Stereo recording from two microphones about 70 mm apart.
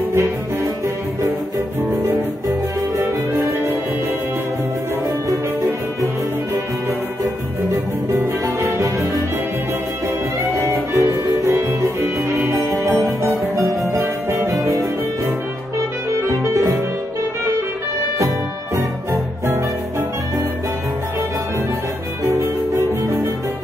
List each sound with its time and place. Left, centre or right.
1.8 s music: right
3.0 s music: right
7.7 s music: right
10.5 s music: right
12.5 s music: right
12.8 s music: right
16.4 s music: right
22.2 s music: right